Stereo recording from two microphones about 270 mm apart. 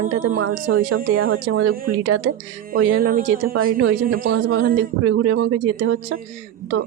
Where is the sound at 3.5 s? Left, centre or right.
Right.